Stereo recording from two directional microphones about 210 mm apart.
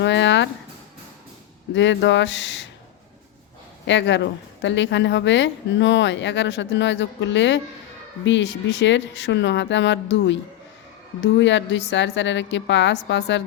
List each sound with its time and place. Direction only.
0.0 s a sound: 60° left (ahead or behind)
1.7 s a woman's voice: 60° left (ahead or behind)
3.8 s a woman's voice: 60° left (ahead or behind)